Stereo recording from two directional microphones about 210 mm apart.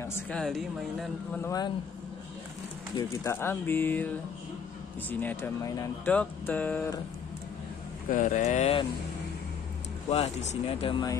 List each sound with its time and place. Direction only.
0.0 s a woman's voice: 5° left (ahead or behind)
1.4 s speech: 15° left (ahead or behind)
3.0 s speech: 15° left (ahead or behind)
5.2 s speech: 10° left (ahead or behind)
8.1 s speech: 40° left (ahead or behind)
10.0 s speech: 30° left (ahead or behind)